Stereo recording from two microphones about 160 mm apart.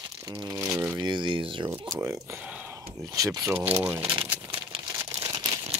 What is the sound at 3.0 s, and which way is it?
Speech, 20° right (ahead or behind).